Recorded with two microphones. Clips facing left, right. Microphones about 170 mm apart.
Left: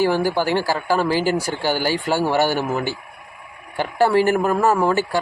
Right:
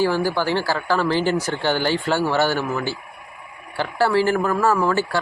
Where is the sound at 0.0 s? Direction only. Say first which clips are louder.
Left 1 dB; 15° left (ahead or behind).